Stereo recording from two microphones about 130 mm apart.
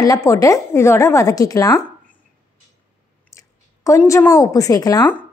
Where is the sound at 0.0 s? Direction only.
25° left (ahead or behind).